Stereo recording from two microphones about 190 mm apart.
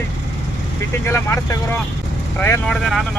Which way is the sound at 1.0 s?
15° left (ahead or behind).